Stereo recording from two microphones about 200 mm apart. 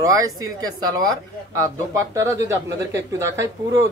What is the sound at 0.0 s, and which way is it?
Speech, 15° right (ahead or behind).